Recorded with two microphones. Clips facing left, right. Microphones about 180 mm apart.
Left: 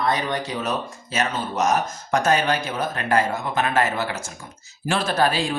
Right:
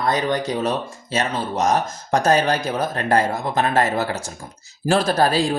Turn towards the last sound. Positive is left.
turn(degrees=-40)  # may be behind; listen again after turning